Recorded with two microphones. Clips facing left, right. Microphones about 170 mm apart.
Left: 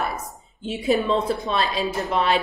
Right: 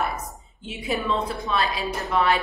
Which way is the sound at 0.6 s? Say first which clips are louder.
Left 7 dB; 30° left (ahead or behind).